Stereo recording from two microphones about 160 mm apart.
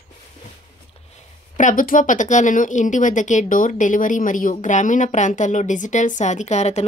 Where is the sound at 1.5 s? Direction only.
55° left (ahead or behind).